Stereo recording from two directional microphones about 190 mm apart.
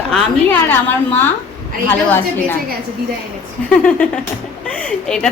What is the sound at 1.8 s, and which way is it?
Speech, 10° left (ahead or behind).